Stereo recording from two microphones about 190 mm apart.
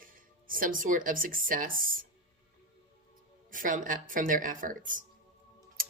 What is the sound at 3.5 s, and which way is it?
A woman's voice, 45° right (ahead or behind).